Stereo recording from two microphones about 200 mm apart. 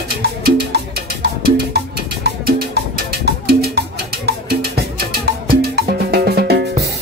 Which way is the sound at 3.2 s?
55° right (ahead or behind).